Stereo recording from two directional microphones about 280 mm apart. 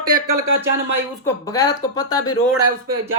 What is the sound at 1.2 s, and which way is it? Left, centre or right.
Speech, centre.